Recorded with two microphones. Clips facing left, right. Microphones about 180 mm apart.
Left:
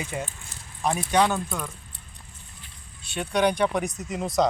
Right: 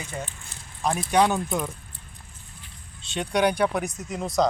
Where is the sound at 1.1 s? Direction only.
10° right (ahead or behind).